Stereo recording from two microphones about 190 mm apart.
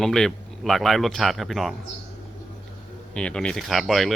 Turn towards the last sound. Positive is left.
turn(degrees=0)  # may be behind; listen again after turning